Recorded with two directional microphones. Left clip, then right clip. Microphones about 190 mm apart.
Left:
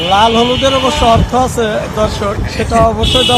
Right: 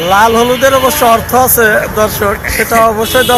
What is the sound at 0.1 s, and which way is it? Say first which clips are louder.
Speech: right 2 dB; 15° right (ahead or behind).